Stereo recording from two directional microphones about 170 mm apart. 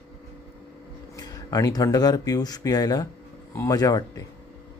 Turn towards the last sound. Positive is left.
turn(degrees=20)  # may be behind; listen again after turning